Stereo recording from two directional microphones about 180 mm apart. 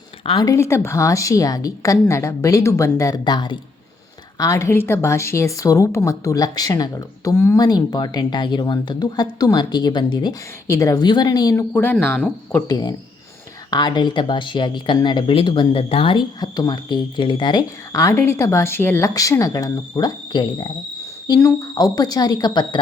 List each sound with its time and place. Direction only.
0.3 s a woman's voice: 20° left (ahead or behind)
11.7 s a woman's voice: 10° left (ahead or behind)
12.6 s speech: 20° left (ahead or behind)